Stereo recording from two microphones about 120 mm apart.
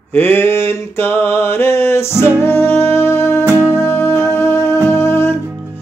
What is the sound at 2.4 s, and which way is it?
Music, 20° left (ahead or behind).